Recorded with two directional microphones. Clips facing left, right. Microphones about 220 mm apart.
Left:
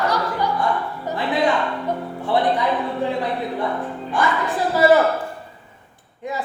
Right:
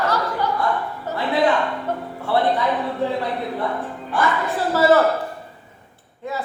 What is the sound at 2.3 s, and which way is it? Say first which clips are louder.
Music: even; 15° left (ahead or behind).